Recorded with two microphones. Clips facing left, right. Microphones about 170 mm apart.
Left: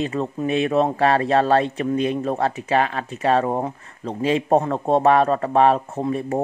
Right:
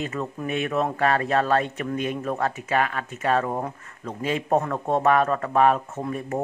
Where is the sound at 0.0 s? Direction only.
30° left (ahead or behind).